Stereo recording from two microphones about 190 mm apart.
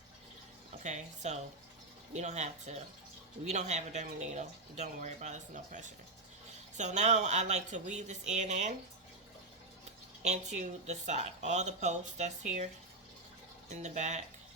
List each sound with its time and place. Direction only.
0.8 s speech: 40° right (ahead or behind)
10.2 s speech: 40° right (ahead or behind)
13.7 s speech: 40° right (ahead or behind)